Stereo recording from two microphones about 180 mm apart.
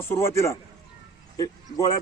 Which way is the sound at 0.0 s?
15° left (ahead or behind).